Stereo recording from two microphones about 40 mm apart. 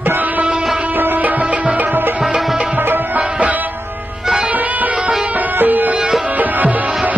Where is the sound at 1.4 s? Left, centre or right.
Right.